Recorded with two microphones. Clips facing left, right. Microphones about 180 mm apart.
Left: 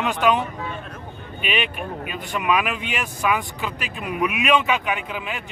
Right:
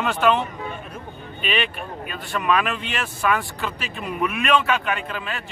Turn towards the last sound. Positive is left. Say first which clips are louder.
# even
turn(degrees=10)  # may be behind; listen again after turning